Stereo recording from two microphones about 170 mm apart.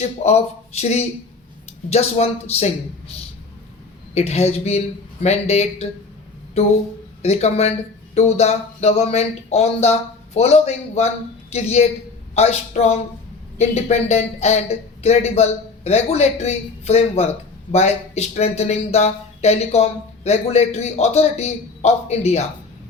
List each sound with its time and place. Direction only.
0.2 s speech: 40° left (ahead or behind)
4.1 s speech: 40° left (ahead or behind)
7.2 s speech: 40° left (ahead or behind)